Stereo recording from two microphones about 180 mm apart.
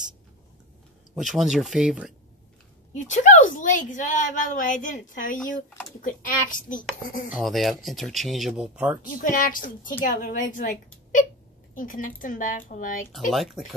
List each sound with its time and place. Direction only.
1.1 s speech: centre (ahead or behind)
2.9 s a woman's voice: 45° left (ahead or behind)
7.3 s speech: centre (ahead or behind)
9.0 s a woman's voice: 45° left (ahead or behind)
13.3 s speech: centre (ahead or behind)